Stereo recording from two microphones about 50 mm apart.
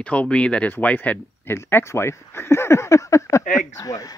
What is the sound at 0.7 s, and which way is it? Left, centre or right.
Speech, left.